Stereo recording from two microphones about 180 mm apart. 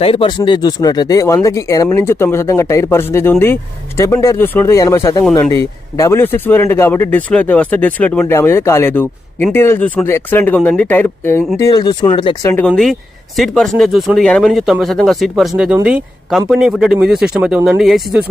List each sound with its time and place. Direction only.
0.0 s speech: 30° left (ahead or behind)
12.4 s speech: 10° left (ahead or behind)